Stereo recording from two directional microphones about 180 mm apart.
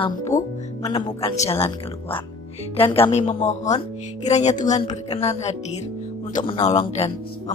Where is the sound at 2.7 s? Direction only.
30° left (ahead or behind).